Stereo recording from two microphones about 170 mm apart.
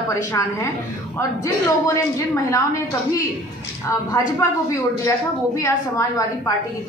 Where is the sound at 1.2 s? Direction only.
20° left (ahead or behind).